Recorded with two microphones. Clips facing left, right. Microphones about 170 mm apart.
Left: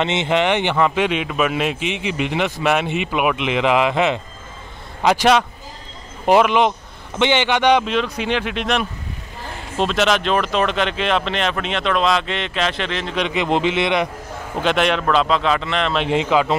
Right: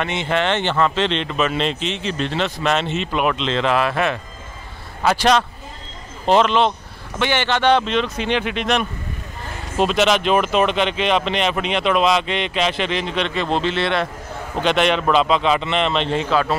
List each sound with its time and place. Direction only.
0.0 s speech: 20° left (ahead or behind); by 13.1 s 5° right (ahead or behind)
13.1 s speech: 15° left (ahead or behind)
14.6 s speech: 5° left (ahead or behind)
16.0 s speech: 15° left (ahead or behind)